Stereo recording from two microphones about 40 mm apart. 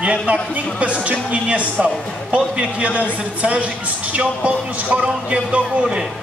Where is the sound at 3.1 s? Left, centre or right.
Right.